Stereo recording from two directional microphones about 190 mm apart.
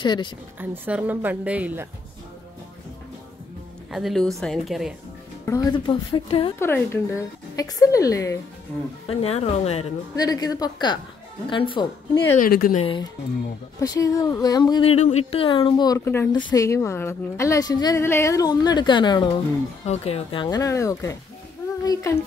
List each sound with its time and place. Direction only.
0.0 s speech: 25° left (ahead or behind)
0.6 s a woman's voice: 10° right (ahead or behind)
3.9 s a woman's voice: centre (ahead or behind)
5.4 s speech: 15° left (ahead or behind)
6.6 s a woman's voice: 10° left (ahead or behind)
9.0 s a woman's voice: 30° left (ahead or behind)
10.1 s speech: 20° left (ahead or behind)
12.4 s a woman's voice: 50° left (ahead or behind)
12.7 s a woman's voice: 25° left (ahead or behind)
14.7 s a woman's voice: 30° left (ahead or behind)